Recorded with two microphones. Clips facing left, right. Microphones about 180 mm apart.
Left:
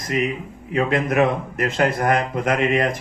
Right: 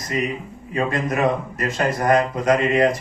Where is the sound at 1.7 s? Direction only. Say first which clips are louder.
Right 2 dB; 55° left (ahead or behind).